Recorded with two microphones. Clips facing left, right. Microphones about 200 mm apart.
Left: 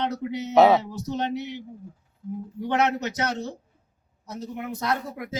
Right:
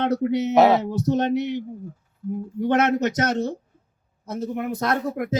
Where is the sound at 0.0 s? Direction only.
55° right (ahead or behind).